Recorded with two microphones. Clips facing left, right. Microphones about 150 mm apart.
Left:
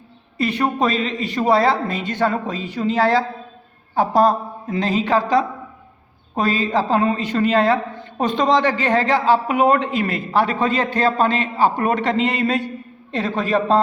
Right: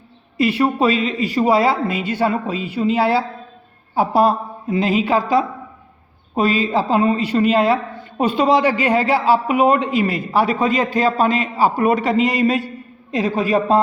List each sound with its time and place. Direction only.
0.3 s a man's voice: 10° right (ahead or behind)